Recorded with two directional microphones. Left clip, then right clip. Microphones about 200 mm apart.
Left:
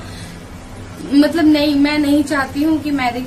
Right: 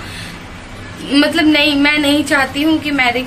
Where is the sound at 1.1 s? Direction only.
5° right (ahead or behind).